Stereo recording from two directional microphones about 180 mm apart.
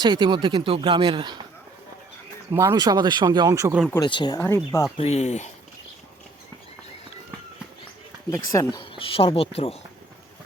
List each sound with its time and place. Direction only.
0.0 s speech: 25° right (ahead or behind)
2.5 s speech: 15° right (ahead or behind)
3.7 s speech: 5° right (ahead or behind)
4.0 s speech: 25° left (ahead or behind)
4.9 s speech: 35° left (ahead or behind)
8.3 s speech: 15° left (ahead or behind); by 9.7 s 35° left (ahead or behind)